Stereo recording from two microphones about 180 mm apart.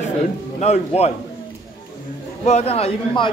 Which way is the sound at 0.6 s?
35° left (ahead or behind).